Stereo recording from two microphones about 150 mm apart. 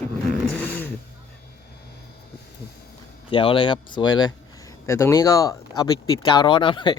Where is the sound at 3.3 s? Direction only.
35° left (ahead or behind).